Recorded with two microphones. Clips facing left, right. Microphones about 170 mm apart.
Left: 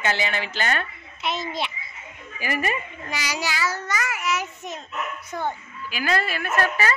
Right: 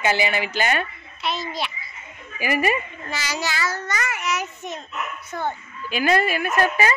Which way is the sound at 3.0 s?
15° left (ahead or behind).